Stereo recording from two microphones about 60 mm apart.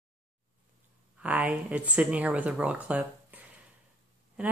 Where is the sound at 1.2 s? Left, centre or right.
Right.